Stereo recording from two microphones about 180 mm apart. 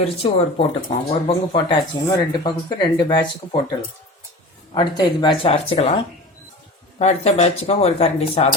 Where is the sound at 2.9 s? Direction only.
25° left (ahead or behind).